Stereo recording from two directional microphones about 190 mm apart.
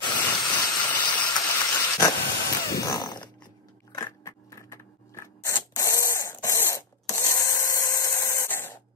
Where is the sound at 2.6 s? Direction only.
20° left (ahead or behind).